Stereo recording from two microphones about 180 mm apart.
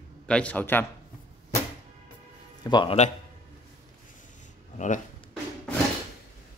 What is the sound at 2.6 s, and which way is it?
Speech, 25° left (ahead or behind).